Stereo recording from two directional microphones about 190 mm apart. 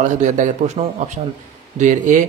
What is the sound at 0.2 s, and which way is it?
Speech, 35° right (ahead or behind).